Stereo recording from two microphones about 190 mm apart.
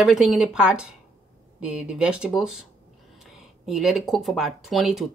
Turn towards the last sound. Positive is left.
turn(degrees=0)  # may be behind; listen again after turning